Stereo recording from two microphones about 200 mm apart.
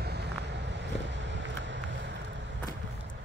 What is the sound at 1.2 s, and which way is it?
Vehicle, 65° right (ahead or behind).